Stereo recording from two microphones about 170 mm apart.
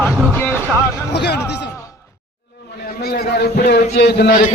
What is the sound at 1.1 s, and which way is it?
Speech, 80° left.